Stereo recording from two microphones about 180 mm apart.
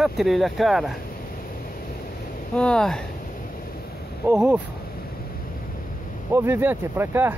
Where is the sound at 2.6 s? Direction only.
5° left (ahead or behind).